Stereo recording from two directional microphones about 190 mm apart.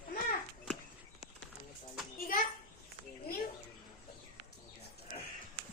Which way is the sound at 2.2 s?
50° left (ahead or behind).